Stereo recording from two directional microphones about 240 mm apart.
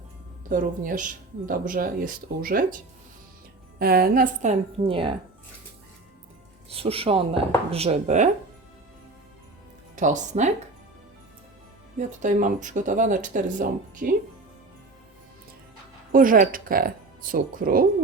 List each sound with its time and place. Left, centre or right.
0.4 s speech: right
6.7 s speech: right
9.9 s speech: right
11.9 s speech: right
16.1 s speech: right